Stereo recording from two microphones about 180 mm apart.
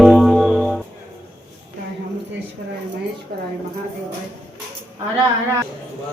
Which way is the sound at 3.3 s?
55° right (ahead or behind).